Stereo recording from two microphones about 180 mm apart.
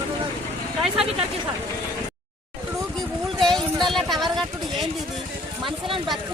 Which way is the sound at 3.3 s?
Centre (ahead or behind).